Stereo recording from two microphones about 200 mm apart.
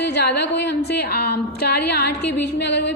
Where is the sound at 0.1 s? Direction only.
55° left (ahead or behind).